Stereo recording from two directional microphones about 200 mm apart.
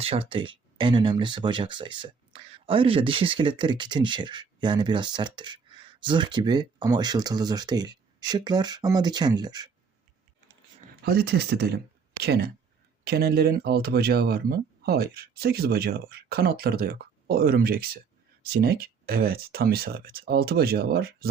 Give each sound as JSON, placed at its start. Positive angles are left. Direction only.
{"t": 0.0, "sound": "speech", "side_deg": -30}
{"t": 11.0, "sound": "speech", "side_deg": -50}